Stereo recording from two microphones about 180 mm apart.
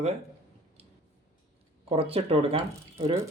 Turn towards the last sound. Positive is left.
turn(degrees=-30)  # may be behind; listen again after turning